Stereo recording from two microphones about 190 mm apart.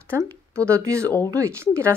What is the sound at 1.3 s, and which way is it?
Speech, 15° right (ahead or behind).